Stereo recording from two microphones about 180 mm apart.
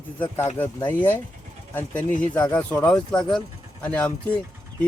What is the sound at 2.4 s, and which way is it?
Speech, 10° left (ahead or behind).